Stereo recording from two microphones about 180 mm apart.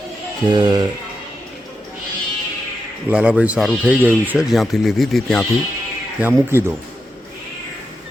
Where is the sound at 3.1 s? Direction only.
5° right (ahead or behind).